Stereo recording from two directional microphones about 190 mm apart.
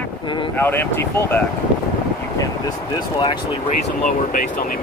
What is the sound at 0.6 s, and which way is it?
Speech, 10° left (ahead or behind).